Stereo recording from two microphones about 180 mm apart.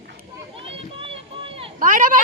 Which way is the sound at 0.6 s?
30° right (ahead or behind).